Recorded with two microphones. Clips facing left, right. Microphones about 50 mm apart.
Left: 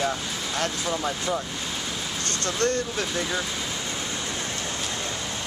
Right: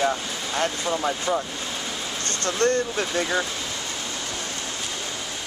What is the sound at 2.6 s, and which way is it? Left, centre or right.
Speech, centre.